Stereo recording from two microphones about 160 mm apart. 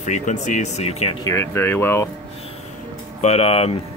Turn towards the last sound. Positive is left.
turn(degrees=40)  # may be behind; listen again after turning